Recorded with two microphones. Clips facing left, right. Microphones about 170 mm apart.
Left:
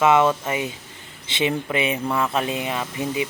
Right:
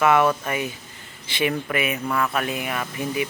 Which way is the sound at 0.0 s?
20° left (ahead or behind).